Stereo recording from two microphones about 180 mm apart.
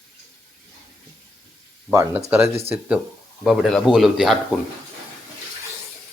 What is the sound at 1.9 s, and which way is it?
Speech, 15° right (ahead or behind).